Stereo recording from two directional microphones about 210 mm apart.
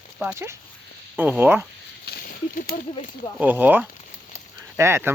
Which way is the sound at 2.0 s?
50° left (ahead or behind).